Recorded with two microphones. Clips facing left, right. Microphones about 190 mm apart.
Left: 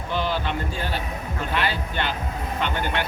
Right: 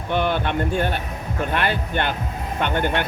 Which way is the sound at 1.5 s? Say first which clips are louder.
Right 2 dB; 55° right (ahead or behind).